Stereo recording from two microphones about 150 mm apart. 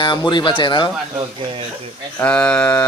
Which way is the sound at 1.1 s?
35° right (ahead or behind).